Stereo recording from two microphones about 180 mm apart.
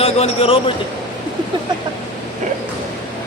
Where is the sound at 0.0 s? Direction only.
30° left (ahead or behind).